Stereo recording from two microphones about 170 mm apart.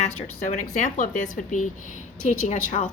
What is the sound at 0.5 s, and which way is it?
A woman's voice, 45° left (ahead or behind).